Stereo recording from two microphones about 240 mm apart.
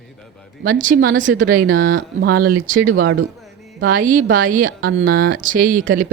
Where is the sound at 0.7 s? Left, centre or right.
Right.